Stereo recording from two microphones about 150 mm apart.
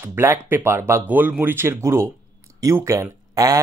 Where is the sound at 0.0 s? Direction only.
15° right (ahead or behind).